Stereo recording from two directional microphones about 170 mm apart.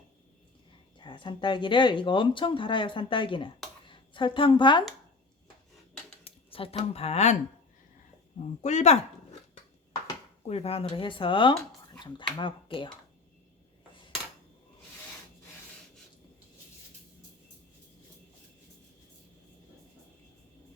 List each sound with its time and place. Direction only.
0.9 s speech: 30° left (ahead or behind)
6.2 s speech: 35° left (ahead or behind)
8.6 s speech: 45° left (ahead or behind)
10.4 s speech: 35° left (ahead or behind)